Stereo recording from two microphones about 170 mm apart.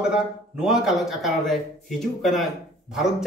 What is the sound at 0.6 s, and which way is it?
Speech, centre (ahead or behind).